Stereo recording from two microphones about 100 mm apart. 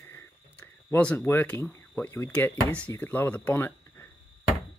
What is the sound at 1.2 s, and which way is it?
Speech, 20° left (ahead or behind).